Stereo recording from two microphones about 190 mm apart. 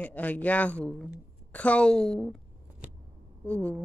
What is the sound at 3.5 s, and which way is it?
Speech, 5° left (ahead or behind).